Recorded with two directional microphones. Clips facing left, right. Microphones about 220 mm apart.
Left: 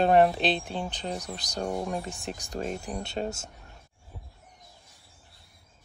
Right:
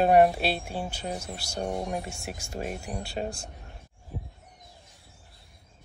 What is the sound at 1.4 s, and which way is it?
Speech, 15° left (ahead or behind).